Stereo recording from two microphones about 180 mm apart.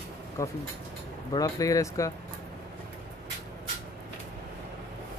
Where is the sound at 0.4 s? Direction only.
15° left (ahead or behind).